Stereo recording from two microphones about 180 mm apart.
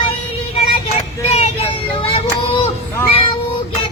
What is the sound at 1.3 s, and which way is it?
Child singing, 30° left (ahead or behind).